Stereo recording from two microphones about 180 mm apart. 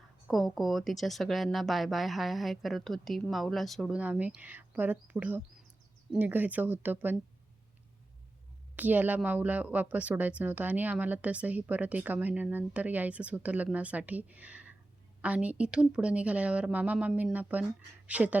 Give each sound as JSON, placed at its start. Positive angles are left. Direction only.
{"t": 0.3, "sound": "a woman's voice", "side_deg": 0}
{"t": 8.7, "sound": "a woman's voice", "side_deg": -10}